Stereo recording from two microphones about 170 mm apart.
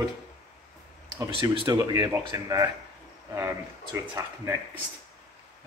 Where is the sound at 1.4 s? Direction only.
25° right (ahead or behind).